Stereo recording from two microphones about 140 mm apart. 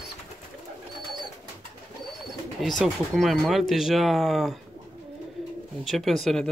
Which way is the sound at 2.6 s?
Centre (ahead or behind).